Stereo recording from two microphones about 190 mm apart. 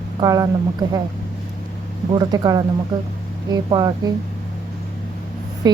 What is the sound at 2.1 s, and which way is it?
Speech, 20° right (ahead or behind).